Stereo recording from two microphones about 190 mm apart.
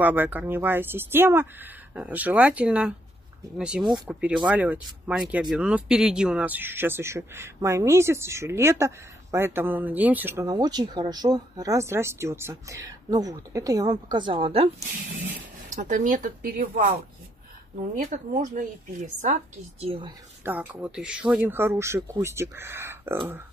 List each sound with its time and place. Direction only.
0.0 s speech: 10° right (ahead or behind); by 16.9 s 40° right (ahead or behind)
17.9 s speech: 40° right (ahead or behind)
20.4 s speech: 10° right (ahead or behind)